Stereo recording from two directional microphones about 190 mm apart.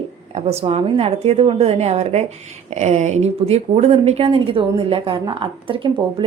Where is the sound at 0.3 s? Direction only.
35° right (ahead or behind).